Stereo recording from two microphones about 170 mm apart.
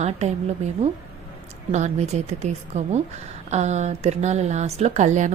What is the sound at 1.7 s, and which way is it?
A woman's voice, 40° right (ahead or behind).